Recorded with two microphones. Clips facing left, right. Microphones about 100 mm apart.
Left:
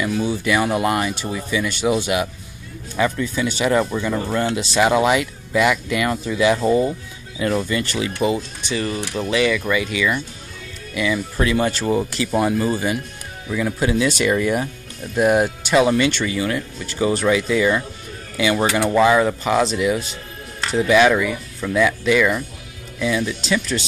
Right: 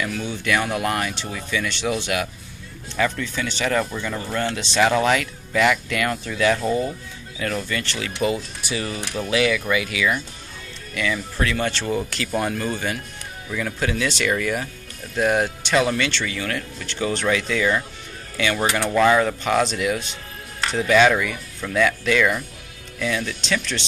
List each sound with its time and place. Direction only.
0.0 s speech: 10° left (ahead or behind)
8.4 s speech: 5° right (ahead or behind)
11.0 s speech: 10° left (ahead or behind)